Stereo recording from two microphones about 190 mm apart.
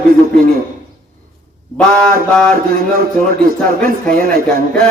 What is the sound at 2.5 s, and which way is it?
Speech, 50° right (ahead or behind).